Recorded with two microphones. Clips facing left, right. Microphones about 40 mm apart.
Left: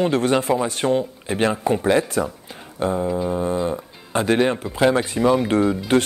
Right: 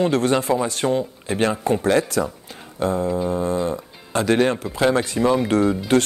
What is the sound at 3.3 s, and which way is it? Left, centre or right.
Speech, left.